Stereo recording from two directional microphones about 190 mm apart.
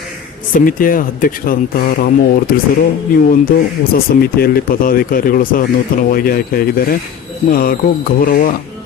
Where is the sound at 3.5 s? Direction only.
50° left (ahead or behind).